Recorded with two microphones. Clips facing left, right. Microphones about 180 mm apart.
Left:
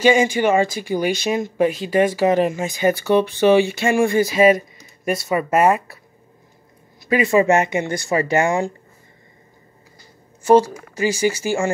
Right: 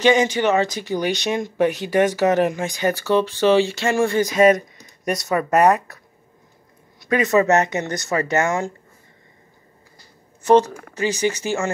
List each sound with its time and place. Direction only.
0.0 s speech: 10° left (ahead or behind)
7.1 s speech: 10° left (ahead or behind)
10.4 s speech: 10° left (ahead or behind)